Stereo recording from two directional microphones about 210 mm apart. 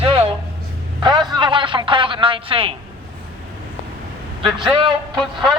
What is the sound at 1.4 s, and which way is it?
Speech, 25° right (ahead or behind).